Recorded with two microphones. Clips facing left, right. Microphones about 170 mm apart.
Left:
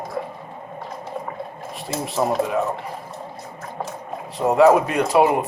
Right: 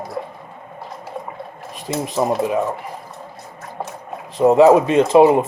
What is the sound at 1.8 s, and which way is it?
Speech, 20° right (ahead or behind).